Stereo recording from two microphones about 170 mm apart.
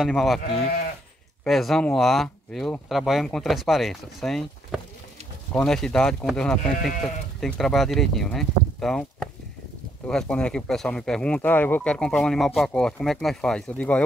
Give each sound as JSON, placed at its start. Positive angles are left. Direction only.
{"t": 0.0, "sound": "speech", "side_deg": 0}
{"t": 0.4, "sound": "speech", "side_deg": 65}
{"t": 1.4, "sound": "speech", "side_deg": 0}